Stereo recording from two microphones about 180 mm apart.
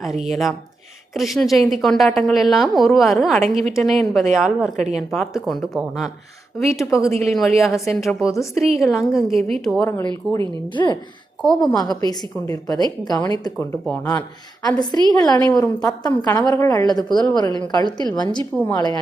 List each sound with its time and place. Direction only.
0.0 s a woman's voice: centre (ahead or behind)
6.7 s a woman's voice: 15° left (ahead or behind)
7.3 s a woman's voice: centre (ahead or behind)
10.8 s a woman's voice: 20° left (ahead or behind)